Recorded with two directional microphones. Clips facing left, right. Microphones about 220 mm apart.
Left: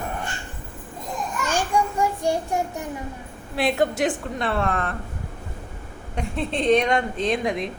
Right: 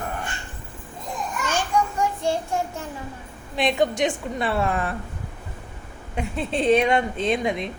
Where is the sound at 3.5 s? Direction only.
5° left (ahead or behind).